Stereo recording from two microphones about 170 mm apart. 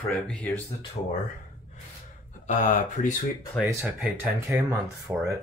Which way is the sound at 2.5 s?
50° left (ahead or behind).